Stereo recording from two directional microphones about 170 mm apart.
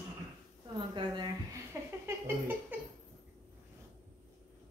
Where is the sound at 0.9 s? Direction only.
25° right (ahead or behind).